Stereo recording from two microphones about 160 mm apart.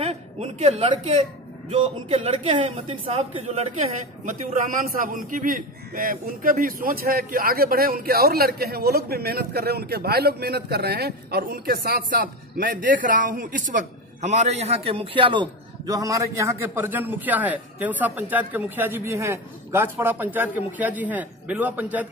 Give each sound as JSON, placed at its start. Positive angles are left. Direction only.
{"t": 0.0, "sound": "a man's voice", "side_deg": -40}